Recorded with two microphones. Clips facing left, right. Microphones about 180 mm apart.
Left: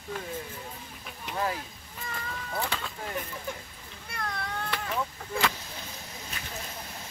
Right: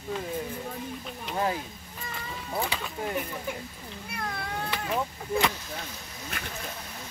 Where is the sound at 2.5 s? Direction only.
15° right (ahead or behind).